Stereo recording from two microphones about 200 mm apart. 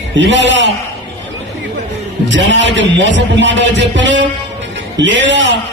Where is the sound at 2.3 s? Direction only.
65° right (ahead or behind).